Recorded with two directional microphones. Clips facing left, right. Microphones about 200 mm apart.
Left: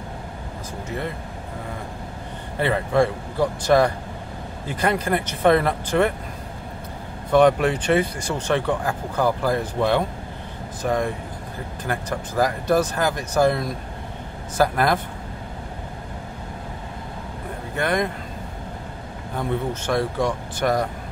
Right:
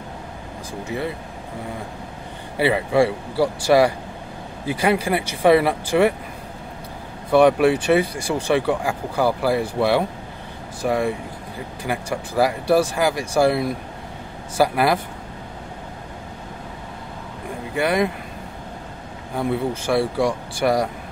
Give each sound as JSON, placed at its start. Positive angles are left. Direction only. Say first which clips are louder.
{"t": 0.8, "sound": "speech", "louder": "right 3 dB", "side_deg": -10}
{"t": 2.5, "sound": "speech", "louder": "right 2 dB", "side_deg": -10}
{"t": 7.2, "sound": "speech", "louder": "right 2 dB", "side_deg": -10}
{"t": 17.7, "sound": "speech", "louder": "right 3 dB", "side_deg": -10}
{"t": 19.3, "sound": "speech", "louder": "right 3 dB", "side_deg": -10}